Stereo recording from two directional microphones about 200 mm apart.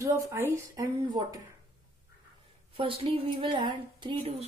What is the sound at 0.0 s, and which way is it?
Speech, 15° right (ahead or behind).